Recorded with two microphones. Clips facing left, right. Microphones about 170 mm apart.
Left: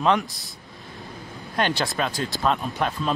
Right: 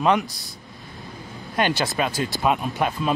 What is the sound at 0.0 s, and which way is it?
Speech, 5° right (ahead or behind).